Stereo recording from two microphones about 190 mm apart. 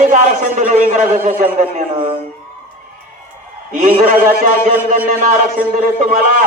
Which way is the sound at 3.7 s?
45° right (ahead or behind).